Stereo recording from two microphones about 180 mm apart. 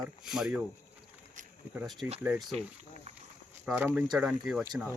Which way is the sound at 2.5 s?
35° right (ahead or behind).